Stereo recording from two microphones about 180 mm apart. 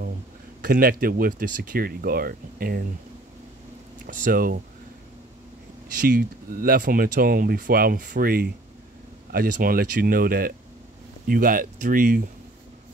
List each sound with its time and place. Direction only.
0.6 s speech: 55° right (ahead or behind)
4.0 s speech: 50° right (ahead or behind)
6.0 s speech: 50° right (ahead or behind)